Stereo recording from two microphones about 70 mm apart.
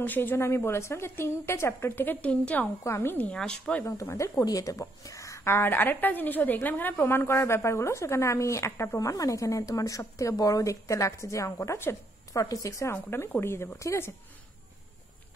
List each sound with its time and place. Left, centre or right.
0.0 s a woman's voice: left
2.2 s a woman's voice: centre
2.8 s a woman's voice: left
3.3 s speech: centre
3.8 s a woman's voice: left
12.9 s a woman's voice: left